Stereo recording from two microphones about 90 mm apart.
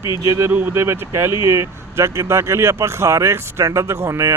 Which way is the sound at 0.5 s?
25° right (ahead or behind).